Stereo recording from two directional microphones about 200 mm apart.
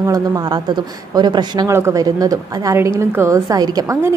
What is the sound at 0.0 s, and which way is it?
A woman's voice, 20° right (ahead or behind).